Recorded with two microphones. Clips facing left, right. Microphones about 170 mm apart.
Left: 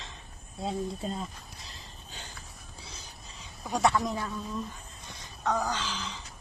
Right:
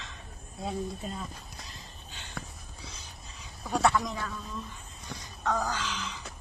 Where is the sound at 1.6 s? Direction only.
40° left (ahead or behind).